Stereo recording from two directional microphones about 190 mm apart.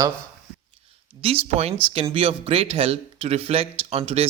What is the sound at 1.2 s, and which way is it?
Speech, 30° right (ahead or behind).